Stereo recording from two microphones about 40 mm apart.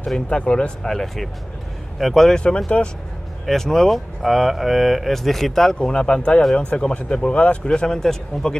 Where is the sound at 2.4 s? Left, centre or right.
Left.